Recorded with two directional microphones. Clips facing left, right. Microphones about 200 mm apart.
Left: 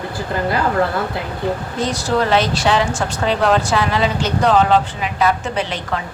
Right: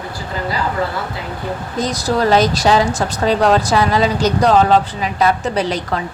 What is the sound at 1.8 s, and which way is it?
Speech, 40° right (ahead or behind).